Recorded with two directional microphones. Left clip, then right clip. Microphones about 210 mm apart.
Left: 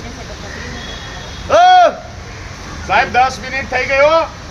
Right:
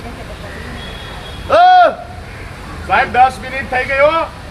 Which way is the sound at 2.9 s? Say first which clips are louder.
Right 1 dB; centre (ahead or behind).